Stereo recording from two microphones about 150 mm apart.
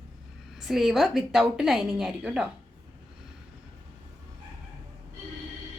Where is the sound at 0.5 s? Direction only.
Centre (ahead or behind).